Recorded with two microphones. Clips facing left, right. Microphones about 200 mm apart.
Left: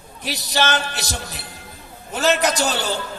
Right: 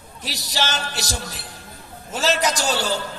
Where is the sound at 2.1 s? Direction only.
60° left (ahead or behind).